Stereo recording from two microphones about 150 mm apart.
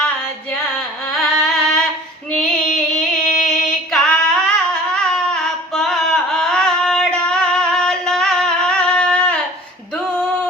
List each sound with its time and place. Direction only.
0.0 s a sound: 5° left (ahead or behind)
1.1 s music: 5° left (ahead or behind)
2.3 s female singing: 5° left (ahead or behind)